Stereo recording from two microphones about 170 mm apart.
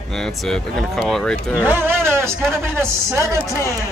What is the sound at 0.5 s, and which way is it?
Speech, 5° left (ahead or behind).